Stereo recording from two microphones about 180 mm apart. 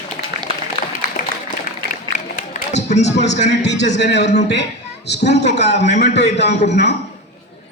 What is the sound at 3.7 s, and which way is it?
A man's voice, 75° left (ahead or behind).